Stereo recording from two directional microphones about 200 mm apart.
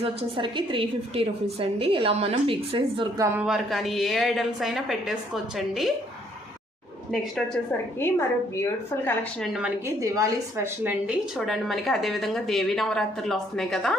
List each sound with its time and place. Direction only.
0.0 s a woman's voice: 25° right (ahead or behind)
3.3 s a woman's voice: 5° right (ahead or behind)
7.1 s a woman's voice: 5° left (ahead or behind)